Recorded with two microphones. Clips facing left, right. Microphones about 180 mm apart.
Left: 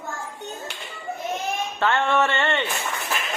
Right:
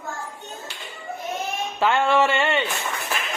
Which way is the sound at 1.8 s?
10° right (ahead or behind).